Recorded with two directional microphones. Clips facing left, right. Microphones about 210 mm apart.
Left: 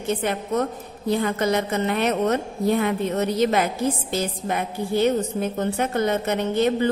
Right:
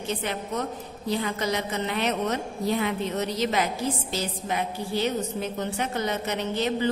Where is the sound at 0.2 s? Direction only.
50° left (ahead or behind).